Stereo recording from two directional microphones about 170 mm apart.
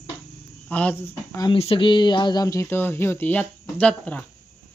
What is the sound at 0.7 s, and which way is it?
Speech, 10° left (ahead or behind).